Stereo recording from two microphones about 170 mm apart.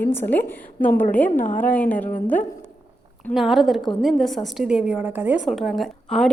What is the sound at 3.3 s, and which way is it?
A woman's voice, centre (ahead or behind).